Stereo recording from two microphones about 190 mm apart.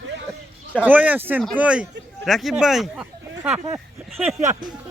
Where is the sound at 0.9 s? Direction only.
10° right (ahead or behind).